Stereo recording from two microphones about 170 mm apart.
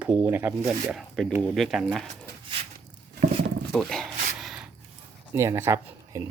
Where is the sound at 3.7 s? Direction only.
Centre (ahead or behind).